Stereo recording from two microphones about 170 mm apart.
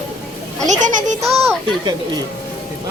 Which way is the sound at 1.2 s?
20° right (ahead or behind).